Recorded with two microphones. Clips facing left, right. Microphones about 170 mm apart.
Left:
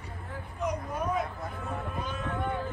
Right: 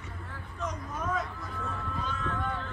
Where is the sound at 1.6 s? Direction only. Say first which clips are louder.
Even; 20° left (ahead or behind).